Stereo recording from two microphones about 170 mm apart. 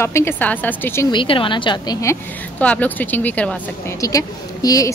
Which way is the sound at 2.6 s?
10° left (ahead or behind).